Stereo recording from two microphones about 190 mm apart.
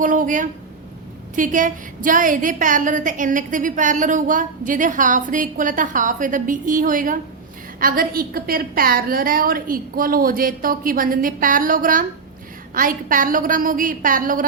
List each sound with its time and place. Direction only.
0.0 s a woman's voice: 45° right (ahead or behind)